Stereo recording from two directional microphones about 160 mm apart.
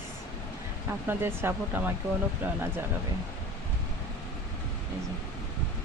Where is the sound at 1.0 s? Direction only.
15° right (ahead or behind).